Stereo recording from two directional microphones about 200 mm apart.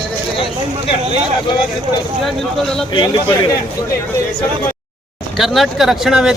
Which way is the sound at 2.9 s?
25° left (ahead or behind).